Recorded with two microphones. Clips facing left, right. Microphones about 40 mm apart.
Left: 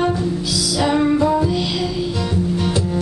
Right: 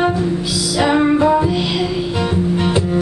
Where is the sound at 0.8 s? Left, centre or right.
Right.